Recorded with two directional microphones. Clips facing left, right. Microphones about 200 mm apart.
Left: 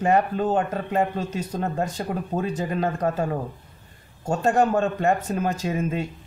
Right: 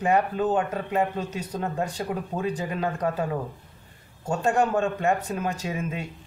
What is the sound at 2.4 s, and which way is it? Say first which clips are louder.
A man's voice: left 3 dB; 40° left (ahead or behind).